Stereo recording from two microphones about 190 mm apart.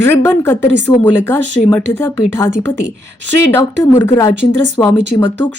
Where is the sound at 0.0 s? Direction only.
10° left (ahead or behind).